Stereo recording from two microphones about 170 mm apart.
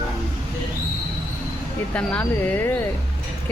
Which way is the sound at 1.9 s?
10° left (ahead or behind).